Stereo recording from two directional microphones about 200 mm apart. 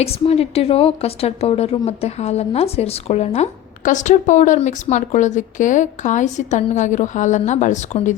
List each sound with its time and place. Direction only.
0.0 s a woman's voice: 30° left (ahead or behind)